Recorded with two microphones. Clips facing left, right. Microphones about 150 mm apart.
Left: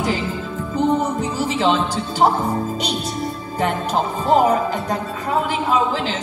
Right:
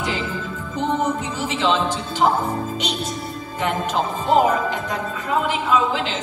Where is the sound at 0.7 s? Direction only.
35° left (ahead or behind).